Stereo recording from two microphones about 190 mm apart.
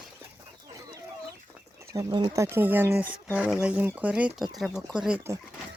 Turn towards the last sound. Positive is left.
turn(degrees=-10)  # may be behind; listen again after turning